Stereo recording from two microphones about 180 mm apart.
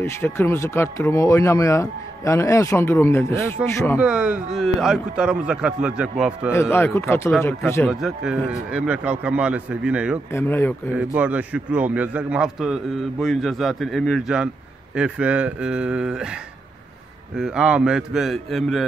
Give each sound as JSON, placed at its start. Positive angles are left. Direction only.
{"t": 0.0, "sound": "speech", "side_deg": 15}
{"t": 4.0, "sound": "a man's voice", "side_deg": -5}
{"t": 6.5, "sound": "speech", "side_deg": 15}
{"t": 7.9, "sound": "speech", "side_deg": -5}
{"t": 10.3, "sound": "speech", "side_deg": 10}
{"t": 11.0, "sound": "a man's voice", "side_deg": -10}
{"t": 17.4, "sound": "a man's voice", "side_deg": -5}